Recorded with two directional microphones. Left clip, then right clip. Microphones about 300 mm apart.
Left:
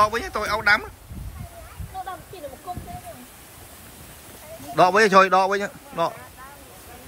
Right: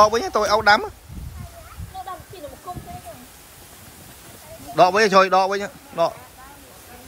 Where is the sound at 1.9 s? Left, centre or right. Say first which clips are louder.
Left 1 dB; centre.